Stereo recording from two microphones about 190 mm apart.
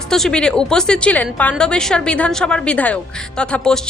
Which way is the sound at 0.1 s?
5° left (ahead or behind).